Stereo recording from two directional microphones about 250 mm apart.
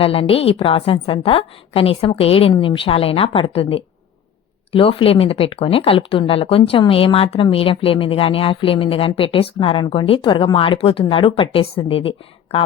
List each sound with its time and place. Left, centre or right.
0.0 s speech: left